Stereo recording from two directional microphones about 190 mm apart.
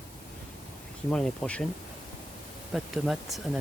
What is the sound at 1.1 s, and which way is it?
Speech, 5° left (ahead or behind).